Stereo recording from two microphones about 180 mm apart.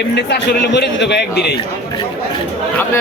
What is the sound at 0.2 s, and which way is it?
A man's voice, 70° left (ahead or behind).